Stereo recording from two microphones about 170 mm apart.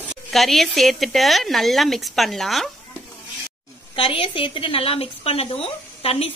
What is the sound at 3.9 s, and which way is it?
A woman's voice, 30° left (ahead or behind).